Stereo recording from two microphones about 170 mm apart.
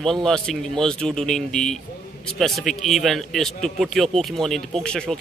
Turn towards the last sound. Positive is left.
turn(degrees=5)  # may be behind; listen again after turning